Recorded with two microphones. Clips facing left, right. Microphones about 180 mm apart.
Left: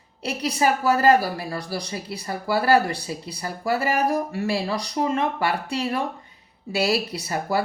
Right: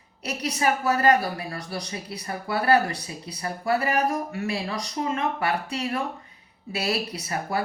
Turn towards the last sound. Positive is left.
turn(degrees=30)  # may be behind; listen again after turning